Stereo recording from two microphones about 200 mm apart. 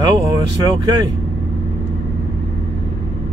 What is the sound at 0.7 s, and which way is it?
Speech, 20° right (ahead or behind).